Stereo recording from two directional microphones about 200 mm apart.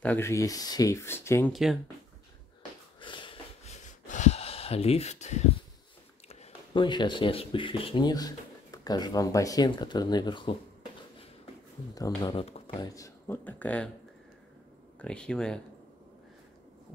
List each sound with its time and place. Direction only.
0.0 s speech: 10° left (ahead or behind)
1.5 s speech: centre (ahead or behind)
3.0 s a sound: 25° left (ahead or behind)
6.2 s speech: 25° left (ahead or behind)
12.2 s speech: 25° left (ahead or behind)
12.8 s speech: 15° left (ahead or behind)
15.0 s speech: 5° left (ahead or behind)